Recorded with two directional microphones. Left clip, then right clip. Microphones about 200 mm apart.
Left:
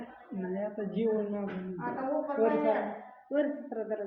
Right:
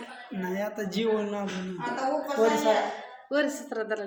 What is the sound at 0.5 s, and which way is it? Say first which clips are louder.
Speech: right 3 dB; 30° right (ahead or behind).